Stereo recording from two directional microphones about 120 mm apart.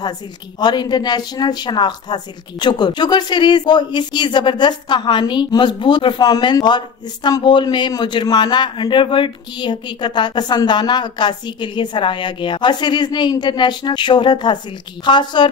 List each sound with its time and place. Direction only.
0.6 s a man's voice: 35° left (ahead or behind)